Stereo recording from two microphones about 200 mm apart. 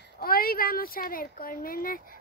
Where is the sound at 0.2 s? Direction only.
45° left (ahead or behind).